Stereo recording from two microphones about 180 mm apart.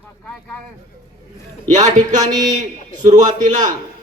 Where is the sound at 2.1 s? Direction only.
40° right (ahead or behind).